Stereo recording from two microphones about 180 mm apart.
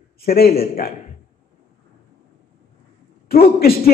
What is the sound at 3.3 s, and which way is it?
Speech, 60° left (ahead or behind).